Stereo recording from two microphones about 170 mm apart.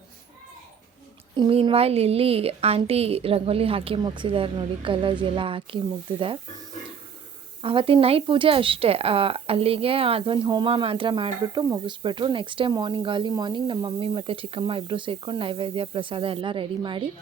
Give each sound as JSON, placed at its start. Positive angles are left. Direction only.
{"t": 1.4, "sound": "speech", "side_deg": -30}
{"t": 7.6, "sound": "speech", "side_deg": -30}